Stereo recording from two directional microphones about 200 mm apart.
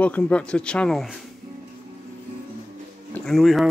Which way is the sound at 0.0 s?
5° left (ahead or behind).